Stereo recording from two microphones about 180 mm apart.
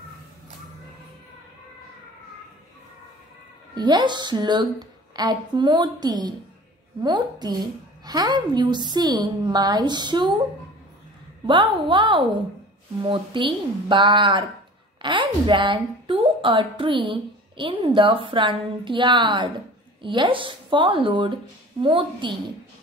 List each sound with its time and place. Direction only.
3.7 s a woman's voice: 25° right (ahead or behind)
11.4 s a woman's voice: 25° right (ahead or behind)